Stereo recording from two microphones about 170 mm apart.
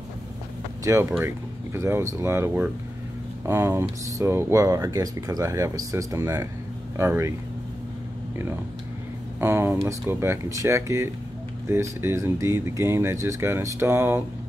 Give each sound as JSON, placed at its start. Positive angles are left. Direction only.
{"t": 0.9, "sound": "speech", "side_deg": -20}
{"t": 9.4, "sound": "speech", "side_deg": -10}